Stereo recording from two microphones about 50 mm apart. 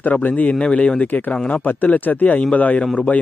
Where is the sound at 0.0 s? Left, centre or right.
Left.